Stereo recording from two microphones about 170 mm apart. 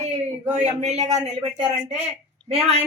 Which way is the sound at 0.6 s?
40° right (ahead or behind).